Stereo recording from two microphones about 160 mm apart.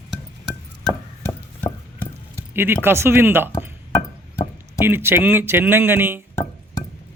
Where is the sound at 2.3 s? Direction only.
15° right (ahead or behind).